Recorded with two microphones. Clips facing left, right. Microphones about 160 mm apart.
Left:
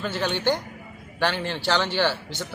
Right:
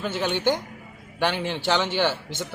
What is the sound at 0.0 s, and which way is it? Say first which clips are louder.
A man's voice: right 1 dB; 15° right (ahead or behind).